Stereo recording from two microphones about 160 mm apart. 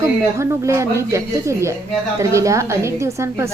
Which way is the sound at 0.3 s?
20° right (ahead or behind).